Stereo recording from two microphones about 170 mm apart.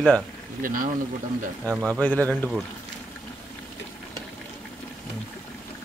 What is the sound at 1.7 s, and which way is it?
Speech, 5° right (ahead or behind).